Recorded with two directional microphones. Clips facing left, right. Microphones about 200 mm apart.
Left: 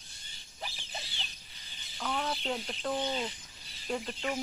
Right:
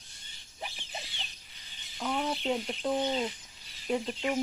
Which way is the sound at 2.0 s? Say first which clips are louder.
Right 3 dB; 5° right (ahead or behind).